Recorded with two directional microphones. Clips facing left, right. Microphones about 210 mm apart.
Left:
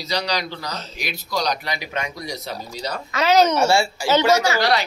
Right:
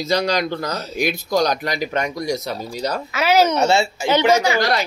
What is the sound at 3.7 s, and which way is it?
Speech, 20° right (ahead or behind).